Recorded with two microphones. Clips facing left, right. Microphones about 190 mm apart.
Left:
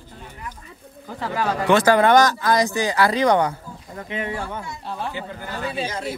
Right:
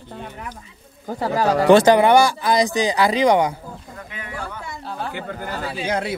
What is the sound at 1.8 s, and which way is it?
Speech, 15° right (ahead or behind).